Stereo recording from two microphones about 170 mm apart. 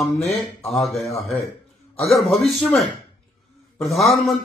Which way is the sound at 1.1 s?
Centre (ahead or behind).